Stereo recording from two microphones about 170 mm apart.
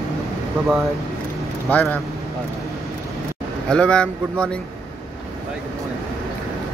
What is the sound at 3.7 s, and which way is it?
Speech, 5° left (ahead or behind).